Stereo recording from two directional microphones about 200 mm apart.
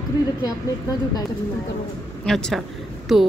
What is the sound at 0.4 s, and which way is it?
Speech, 20° left (ahead or behind).